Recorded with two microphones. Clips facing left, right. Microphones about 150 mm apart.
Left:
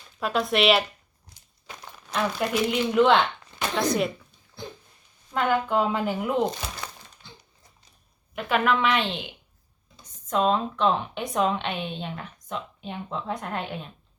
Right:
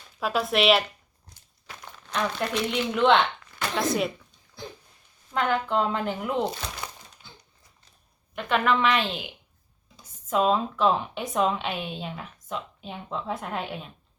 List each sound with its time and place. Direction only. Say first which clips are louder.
0.2 s a woman's voice: left 1 dB; centre (ahead or behind)
1.3 s walk: left 2 dB; 15° left (ahead or behind)
2.1 s a woman's voice: left 2 dB; 5° left (ahead or behind)
3.4 s a sound: left 2 dB; 25° left (ahead or behind)
3.8 s a sound: left 1 dB; centre (ahead or behind)
5.3 s a woman's voice: left 1 dB; 5° left (ahead or behind)
7.2 s crumpling: left 3 dB; centre (ahead or behind)
8.4 s a woman's voice: even; 5° left (ahead or behind)